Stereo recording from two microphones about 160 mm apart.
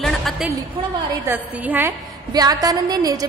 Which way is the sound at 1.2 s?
10° right (ahead or behind).